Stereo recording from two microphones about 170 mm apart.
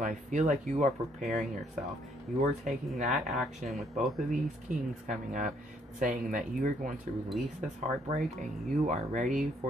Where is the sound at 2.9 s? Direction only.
40° right (ahead or behind).